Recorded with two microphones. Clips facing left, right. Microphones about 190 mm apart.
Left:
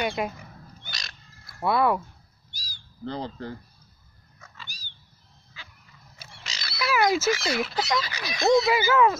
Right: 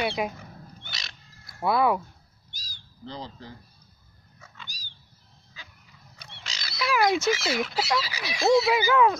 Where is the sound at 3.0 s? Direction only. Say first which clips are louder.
Left 6 dB; 55° left (ahead or behind).